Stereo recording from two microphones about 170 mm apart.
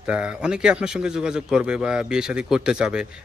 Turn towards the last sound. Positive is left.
turn(degrees=-5)  # may be behind; listen again after turning